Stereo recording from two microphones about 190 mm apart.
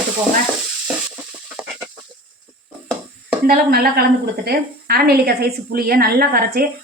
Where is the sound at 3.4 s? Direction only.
50° right (ahead or behind).